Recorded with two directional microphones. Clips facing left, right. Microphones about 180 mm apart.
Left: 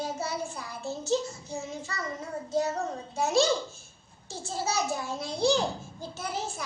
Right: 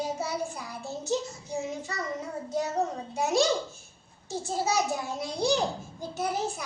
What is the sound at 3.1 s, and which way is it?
A child's voice, 15° right (ahead or behind).